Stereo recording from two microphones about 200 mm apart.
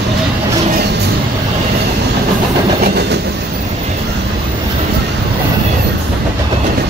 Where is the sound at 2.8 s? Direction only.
50° right (ahead or behind).